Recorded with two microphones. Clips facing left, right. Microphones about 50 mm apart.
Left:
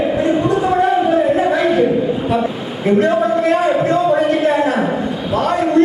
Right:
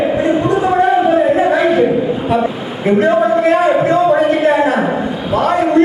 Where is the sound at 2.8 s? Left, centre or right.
Centre.